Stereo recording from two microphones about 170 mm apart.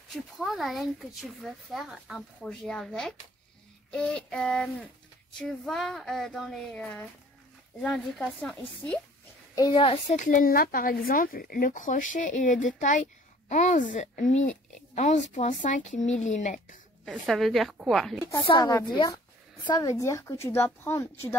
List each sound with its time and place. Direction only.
0.1 s speech: centre (ahead or behind)
8.4 s speech: 5° left (ahead or behind)
9.6 s a woman's voice: 30° left (ahead or behind)
10.0 s speech: 50° left (ahead or behind)
17.0 s speech: centre (ahead or behind)
18.3 s a woman's voice: 30° left (ahead or behind)